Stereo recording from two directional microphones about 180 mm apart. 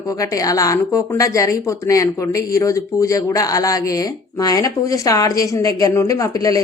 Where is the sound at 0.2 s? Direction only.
20° left (ahead or behind).